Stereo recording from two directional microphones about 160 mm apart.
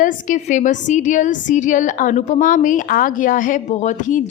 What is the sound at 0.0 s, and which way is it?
A woman's voice, 55° left (ahead or behind).